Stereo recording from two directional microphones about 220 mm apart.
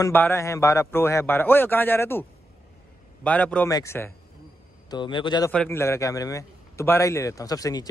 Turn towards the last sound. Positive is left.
turn(degrees=15)  # may be behind; listen again after turning